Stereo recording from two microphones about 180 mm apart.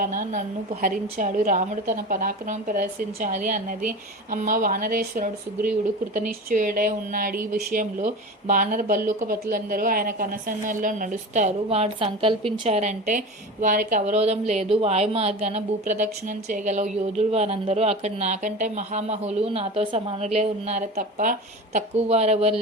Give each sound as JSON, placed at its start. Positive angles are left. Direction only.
{"t": 0.0, "sound": "a woman's voice", "side_deg": -45}